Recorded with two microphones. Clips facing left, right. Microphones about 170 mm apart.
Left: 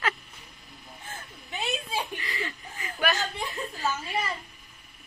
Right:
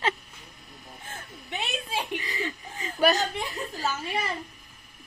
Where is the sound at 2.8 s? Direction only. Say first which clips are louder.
Right 5 dB; 40° right (ahead or behind).